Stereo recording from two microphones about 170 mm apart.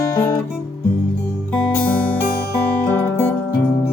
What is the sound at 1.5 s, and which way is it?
Music, 5° left (ahead or behind).